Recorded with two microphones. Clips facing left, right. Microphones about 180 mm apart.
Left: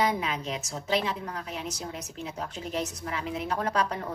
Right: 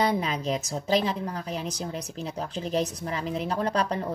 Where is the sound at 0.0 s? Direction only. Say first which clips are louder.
Right 2 dB; 35° right (ahead or behind).